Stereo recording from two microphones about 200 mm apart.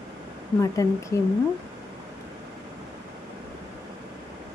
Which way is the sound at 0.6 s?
15° left (ahead or behind).